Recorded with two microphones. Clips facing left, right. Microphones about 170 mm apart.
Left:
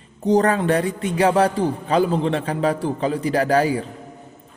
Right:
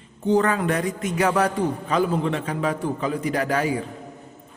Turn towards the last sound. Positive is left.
turn(degrees=35)  # may be behind; listen again after turning